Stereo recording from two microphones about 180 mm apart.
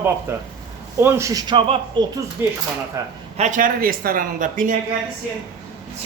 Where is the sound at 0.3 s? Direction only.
15° right (ahead or behind); by 2.0 s 30° right (ahead or behind).